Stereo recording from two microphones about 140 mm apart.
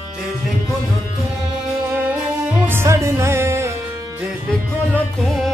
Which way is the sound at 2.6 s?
15° right (ahead or behind).